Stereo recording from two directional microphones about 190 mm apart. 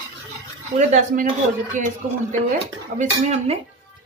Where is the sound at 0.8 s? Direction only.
40° right (ahead or behind).